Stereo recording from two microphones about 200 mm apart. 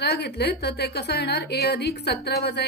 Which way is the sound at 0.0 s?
55° left (ahead or behind).